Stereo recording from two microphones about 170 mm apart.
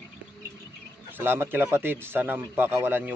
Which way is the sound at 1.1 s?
10° right (ahead or behind).